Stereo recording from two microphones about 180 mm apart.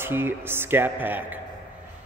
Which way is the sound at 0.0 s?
10° right (ahead or behind).